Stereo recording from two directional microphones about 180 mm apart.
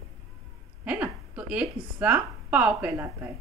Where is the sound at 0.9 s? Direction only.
5° right (ahead or behind).